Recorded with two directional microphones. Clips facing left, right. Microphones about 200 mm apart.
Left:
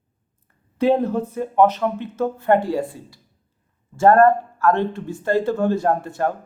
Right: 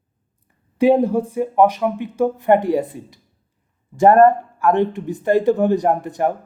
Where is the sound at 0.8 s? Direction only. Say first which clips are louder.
Right 4 dB; 15° right (ahead or behind).